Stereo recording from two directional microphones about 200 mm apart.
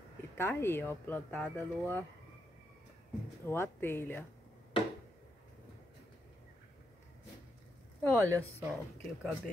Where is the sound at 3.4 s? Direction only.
10° left (ahead or behind).